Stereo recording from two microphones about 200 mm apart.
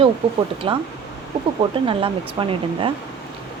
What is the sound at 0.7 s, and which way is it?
Speech, 25° right (ahead or behind).